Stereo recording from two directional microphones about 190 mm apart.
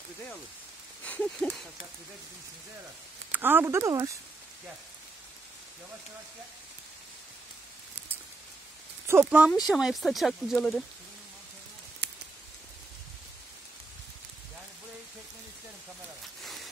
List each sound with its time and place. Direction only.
1.0 s speech: 10° left (ahead or behind)
3.3 s speech: 10° right (ahead or behind)
9.0 s speech: 15° right (ahead or behind)
12.0 s a sound: 65° right (ahead or behind)